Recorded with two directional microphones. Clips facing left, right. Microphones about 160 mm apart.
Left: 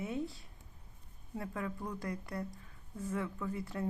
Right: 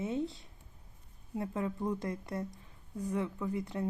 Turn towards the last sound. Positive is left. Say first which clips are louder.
# right 3 dB
turn(degrees=-20)  # may be behind; listen again after turning